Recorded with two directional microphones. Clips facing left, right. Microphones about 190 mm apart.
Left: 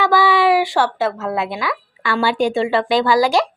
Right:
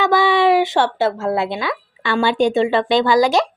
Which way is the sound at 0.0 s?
20° right (ahead or behind).